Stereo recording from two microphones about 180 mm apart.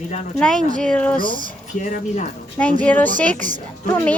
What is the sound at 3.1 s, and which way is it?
Speech, 45° right (ahead or behind).